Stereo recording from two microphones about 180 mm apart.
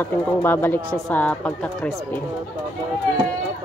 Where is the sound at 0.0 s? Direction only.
10° left (ahead or behind).